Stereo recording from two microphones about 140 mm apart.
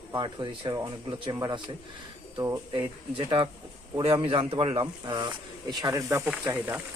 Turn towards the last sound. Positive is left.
turn(degrees=-15)  # may be behind; listen again after turning